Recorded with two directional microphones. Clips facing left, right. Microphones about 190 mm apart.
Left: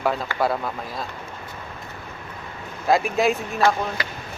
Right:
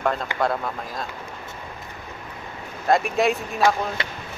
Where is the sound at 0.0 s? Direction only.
5° left (ahead or behind).